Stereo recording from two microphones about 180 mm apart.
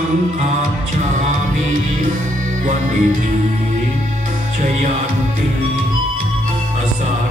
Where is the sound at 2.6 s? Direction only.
45° right (ahead or behind).